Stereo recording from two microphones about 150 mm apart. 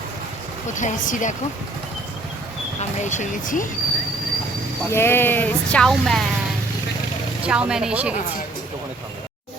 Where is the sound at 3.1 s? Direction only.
60° left (ahead or behind).